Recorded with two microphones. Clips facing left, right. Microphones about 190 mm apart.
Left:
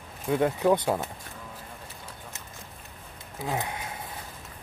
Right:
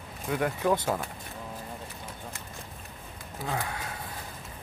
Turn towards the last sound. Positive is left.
turn(degrees=20)  # may be behind; listen again after turning